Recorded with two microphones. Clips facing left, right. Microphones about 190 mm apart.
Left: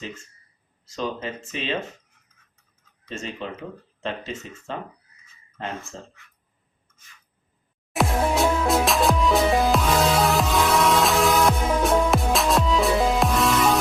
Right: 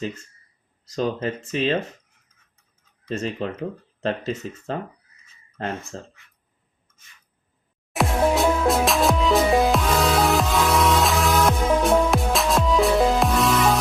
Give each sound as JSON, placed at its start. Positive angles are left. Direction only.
{"t": 0.9, "sound": "speech", "side_deg": -40}
{"t": 3.1, "sound": "speech", "side_deg": -40}
{"t": 7.9, "sound": "music", "side_deg": 0}